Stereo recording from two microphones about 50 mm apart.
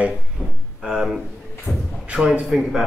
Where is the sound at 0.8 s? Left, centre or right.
Centre.